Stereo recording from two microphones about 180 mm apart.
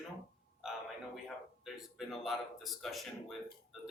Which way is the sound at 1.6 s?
Centre (ahead or behind).